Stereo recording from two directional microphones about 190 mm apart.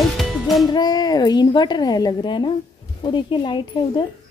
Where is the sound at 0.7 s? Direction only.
20° left (ahead or behind).